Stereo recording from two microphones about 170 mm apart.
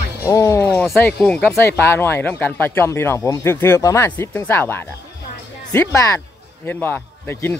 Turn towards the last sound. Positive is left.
turn(degrees=15)  # may be behind; listen again after turning